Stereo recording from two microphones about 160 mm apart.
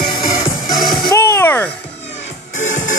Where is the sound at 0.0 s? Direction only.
25° left (ahead or behind).